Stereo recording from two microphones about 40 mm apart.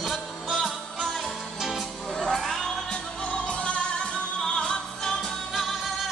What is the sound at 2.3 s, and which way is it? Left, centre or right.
Music, centre.